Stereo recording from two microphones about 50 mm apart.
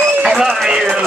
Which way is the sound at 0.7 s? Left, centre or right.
Centre.